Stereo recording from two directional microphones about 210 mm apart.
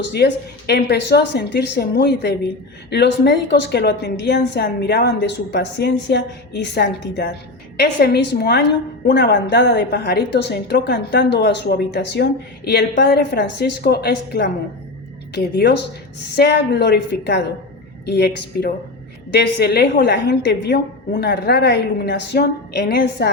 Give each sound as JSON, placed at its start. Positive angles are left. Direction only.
{"t": 0.7, "sound": "a woman's voice", "side_deg": 55}
{"t": 15.5, "sound": "a woman's voice", "side_deg": 55}